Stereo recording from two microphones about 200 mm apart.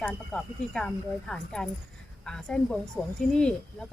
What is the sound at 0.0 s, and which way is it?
Speech, 5° left (ahead or behind).